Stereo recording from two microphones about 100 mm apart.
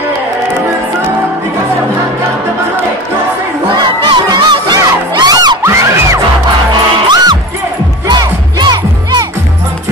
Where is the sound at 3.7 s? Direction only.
45° right (ahead or behind).